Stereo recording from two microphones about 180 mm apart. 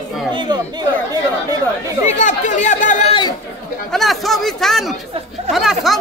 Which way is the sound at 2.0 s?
40° left (ahead or behind).